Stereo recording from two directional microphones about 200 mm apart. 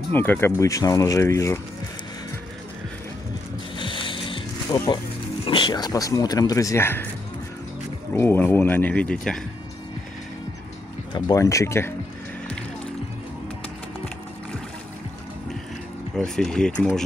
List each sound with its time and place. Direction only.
0.1 s speech: 10° left (ahead or behind)
3.7 s music: 25° left (ahead or behind)
5.4 s speech: 25° left (ahead or behind)
8.1 s speech: 10° left (ahead or behind)
11.1 s speech: 20° left (ahead or behind)
16.2 s speech: 5° left (ahead or behind)